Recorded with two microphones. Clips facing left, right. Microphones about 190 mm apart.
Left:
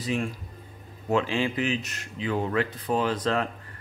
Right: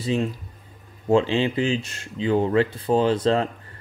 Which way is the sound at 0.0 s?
25° right (ahead or behind).